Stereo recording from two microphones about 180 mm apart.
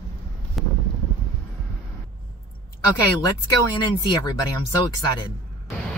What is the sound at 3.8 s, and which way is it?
Speech, 25° left (ahead or behind).